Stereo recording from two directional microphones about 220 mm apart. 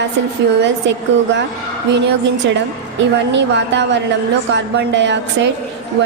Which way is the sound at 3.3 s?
55° right (ahead or behind).